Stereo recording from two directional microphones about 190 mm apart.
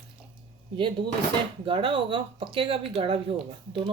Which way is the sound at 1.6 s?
25° right (ahead or behind).